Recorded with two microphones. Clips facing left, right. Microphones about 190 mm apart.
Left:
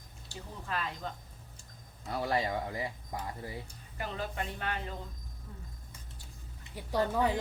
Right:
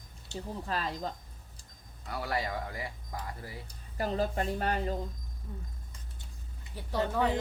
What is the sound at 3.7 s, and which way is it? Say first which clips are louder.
Speech: right 7 dB; 40° right (ahead or behind).